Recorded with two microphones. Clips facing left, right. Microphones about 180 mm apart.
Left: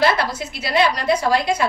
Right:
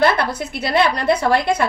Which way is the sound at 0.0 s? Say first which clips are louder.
Right 2 dB; 55° right (ahead or behind).